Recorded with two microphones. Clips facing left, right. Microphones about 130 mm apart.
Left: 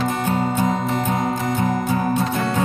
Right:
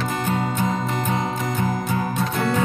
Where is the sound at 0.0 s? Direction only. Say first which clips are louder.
Left 3 dB; 25° left (ahead or behind).